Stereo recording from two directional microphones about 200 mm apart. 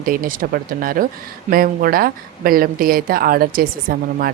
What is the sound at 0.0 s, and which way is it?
Speech, 45° right (ahead or behind).